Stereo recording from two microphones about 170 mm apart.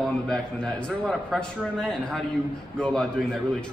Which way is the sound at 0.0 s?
5° left (ahead or behind).